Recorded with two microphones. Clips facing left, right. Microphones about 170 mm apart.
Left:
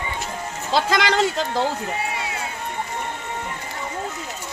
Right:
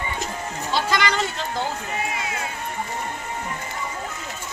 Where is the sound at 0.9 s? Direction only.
90° left.